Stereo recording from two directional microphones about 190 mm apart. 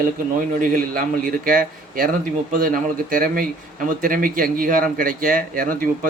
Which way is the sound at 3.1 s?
50° right (ahead or behind).